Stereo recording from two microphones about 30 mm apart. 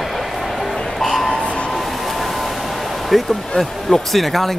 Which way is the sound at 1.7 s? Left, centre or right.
Centre.